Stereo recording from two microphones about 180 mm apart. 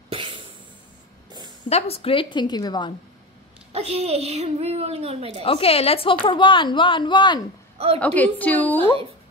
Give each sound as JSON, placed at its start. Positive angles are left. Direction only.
{"t": 0.1, "sound": "music", "side_deg": -30}
{"t": 1.7, "sound": "a woman's voice", "side_deg": 35}
{"t": 3.7, "sound": "speech", "side_deg": -35}
{"t": 5.4, "sound": "a woman's voice", "side_deg": 30}
{"t": 7.7, "sound": "a sound", "side_deg": -35}
{"t": 8.0, "sound": "a woman's voice", "side_deg": 10}